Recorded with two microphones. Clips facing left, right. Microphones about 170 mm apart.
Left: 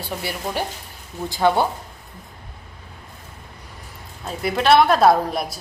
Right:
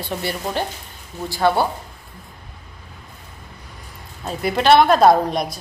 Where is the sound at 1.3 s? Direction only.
20° left (ahead or behind).